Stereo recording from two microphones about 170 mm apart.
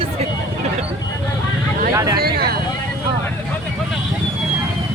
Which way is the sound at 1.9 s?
20° right (ahead or behind).